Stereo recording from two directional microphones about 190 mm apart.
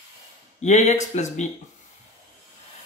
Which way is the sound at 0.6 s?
40° left (ahead or behind).